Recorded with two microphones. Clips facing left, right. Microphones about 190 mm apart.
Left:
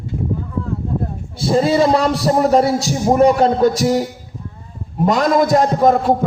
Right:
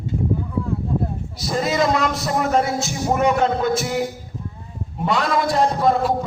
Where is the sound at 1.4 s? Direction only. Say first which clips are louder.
Left 7 dB; 30° left (ahead or behind).